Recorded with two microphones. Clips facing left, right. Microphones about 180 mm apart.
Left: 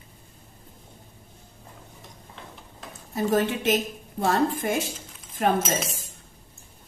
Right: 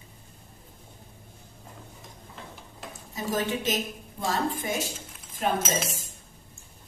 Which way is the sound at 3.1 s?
55° left (ahead or behind).